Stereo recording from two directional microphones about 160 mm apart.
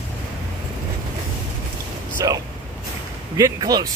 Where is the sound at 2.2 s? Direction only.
20° right (ahead or behind).